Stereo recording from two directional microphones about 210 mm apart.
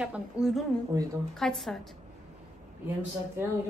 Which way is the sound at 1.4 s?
5° left (ahead or behind).